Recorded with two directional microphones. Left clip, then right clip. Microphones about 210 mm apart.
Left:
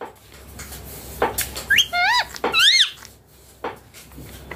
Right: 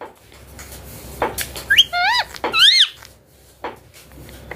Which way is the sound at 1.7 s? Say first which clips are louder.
Right 3 dB; 15° right (ahead or behind).